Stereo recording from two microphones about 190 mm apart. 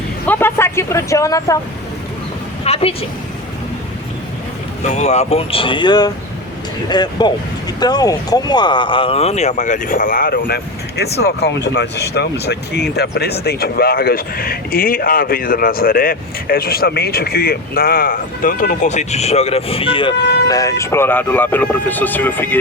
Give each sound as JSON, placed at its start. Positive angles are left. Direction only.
{"t": 0.3, "sound": "speech", "side_deg": 10}
{"t": 2.6, "sound": "a woman's voice", "side_deg": 30}
{"t": 4.9, "sound": "speech", "side_deg": 35}
{"t": 20.5, "sound": "speech", "side_deg": 15}